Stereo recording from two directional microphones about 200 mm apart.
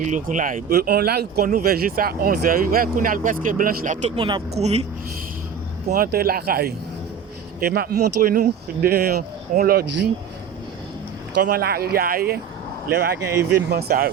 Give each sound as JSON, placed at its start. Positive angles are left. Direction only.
{"t": 0.1, "sound": "speech", "side_deg": -40}
{"t": 5.9, "sound": "speech", "side_deg": -50}
{"t": 11.4, "sound": "speech", "side_deg": -50}